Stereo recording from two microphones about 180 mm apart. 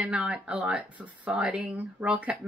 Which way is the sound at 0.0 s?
5° right (ahead or behind).